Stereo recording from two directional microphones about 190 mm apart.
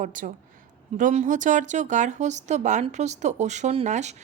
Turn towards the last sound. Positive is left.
turn(degrees=-35)  # may be behind; listen again after turning